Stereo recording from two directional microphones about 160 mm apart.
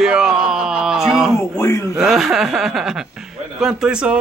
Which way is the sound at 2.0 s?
Centre (ahead or behind).